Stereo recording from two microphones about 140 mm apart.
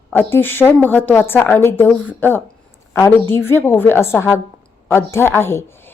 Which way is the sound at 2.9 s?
15° left (ahead or behind).